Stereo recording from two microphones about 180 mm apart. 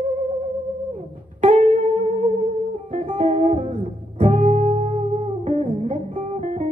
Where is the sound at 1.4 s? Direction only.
40° right (ahead or behind).